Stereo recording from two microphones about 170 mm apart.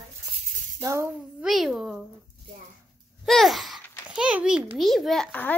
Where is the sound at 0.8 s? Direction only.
15° right (ahead or behind).